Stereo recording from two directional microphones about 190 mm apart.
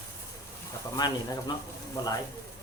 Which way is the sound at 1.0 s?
20° left (ahead or behind).